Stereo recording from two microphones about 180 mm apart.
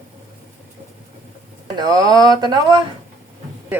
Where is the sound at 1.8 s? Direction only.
20° right (ahead or behind).